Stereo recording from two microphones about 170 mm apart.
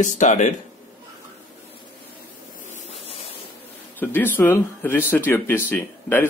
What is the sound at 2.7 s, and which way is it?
Waves, 40° left (ahead or behind).